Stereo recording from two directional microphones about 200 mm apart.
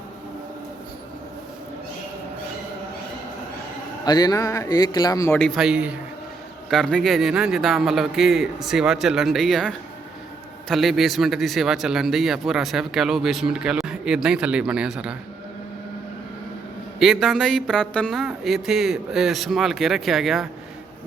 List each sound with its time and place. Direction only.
4.0 s a man's voice: 20° left (ahead or behind)
5.3 s speech: centre (ahead or behind)
17.0 s speech: centre (ahead or behind)